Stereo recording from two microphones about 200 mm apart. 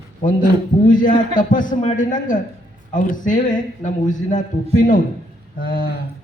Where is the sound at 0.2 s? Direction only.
40° left (ahead or behind).